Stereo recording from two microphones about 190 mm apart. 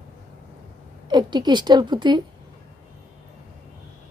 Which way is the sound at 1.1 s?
20° right (ahead or behind).